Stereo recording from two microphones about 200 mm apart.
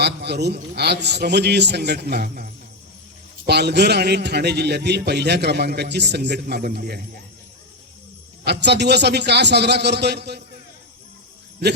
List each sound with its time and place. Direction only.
0.0 s a man's voice: 55° right (ahead or behind)
8.4 s a man's voice: 55° right (ahead or behind)